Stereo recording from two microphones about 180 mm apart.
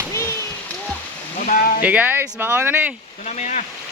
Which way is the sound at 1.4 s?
50° left (ahead or behind).